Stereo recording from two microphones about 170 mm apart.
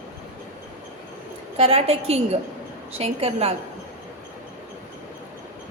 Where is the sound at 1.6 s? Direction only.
35° right (ahead or behind).